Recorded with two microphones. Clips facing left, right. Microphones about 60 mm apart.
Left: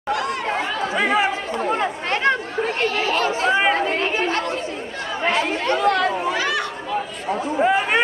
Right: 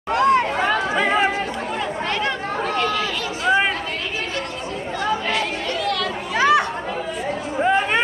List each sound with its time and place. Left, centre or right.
0.1 s chatter: right
0.9 s chatter: centre
1.7 s chatter: left
5.2 s chatter: left
6.3 s chatter: right
7.6 s chatter: centre